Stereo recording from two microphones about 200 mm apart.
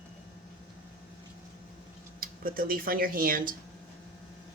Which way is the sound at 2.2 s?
45° right (ahead or behind).